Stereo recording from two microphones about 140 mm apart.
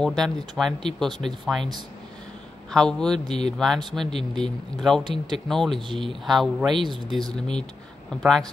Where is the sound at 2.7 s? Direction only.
5° left (ahead or behind).